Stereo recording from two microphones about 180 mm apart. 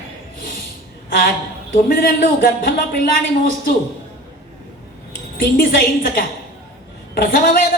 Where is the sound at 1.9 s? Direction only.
55° left (ahead or behind).